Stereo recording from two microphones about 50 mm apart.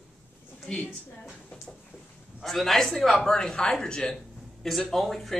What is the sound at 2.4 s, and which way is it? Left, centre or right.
Speech, centre.